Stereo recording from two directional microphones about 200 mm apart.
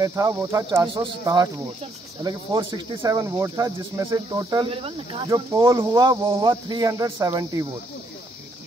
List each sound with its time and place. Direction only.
0.0 s speech: 15° right (ahead or behind)